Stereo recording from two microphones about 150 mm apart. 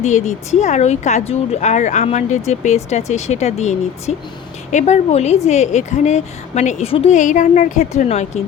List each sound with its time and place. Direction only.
0.0 s a woman's voice: 50° left (ahead or behind)